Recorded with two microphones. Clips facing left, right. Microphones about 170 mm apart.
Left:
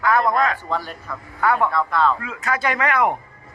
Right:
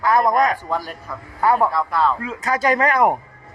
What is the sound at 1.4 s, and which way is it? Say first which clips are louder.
Speech: right 2 dB; 35° right (ahead or behind).